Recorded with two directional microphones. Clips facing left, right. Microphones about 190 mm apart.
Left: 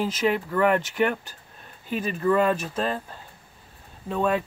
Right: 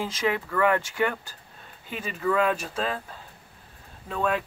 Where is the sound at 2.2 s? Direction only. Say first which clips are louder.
Left 2 dB; centre (ahead or behind).